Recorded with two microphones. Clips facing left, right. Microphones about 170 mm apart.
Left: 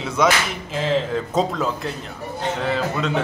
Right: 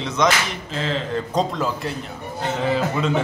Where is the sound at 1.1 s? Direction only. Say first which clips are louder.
Left 1 dB; centre (ahead or behind).